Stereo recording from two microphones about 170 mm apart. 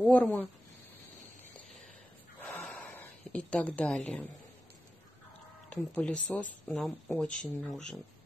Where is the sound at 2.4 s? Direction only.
5° left (ahead or behind).